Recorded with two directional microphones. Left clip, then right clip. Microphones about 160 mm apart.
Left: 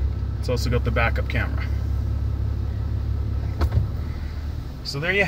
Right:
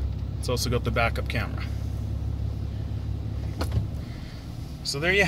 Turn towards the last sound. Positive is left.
turn(degrees=-45)  # may be behind; listen again after turning